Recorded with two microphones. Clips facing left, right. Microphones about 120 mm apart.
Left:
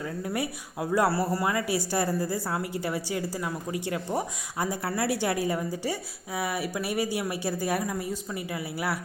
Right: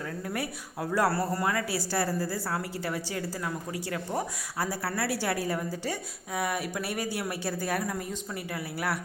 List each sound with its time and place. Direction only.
0.0 s speech: 10° left (ahead or behind)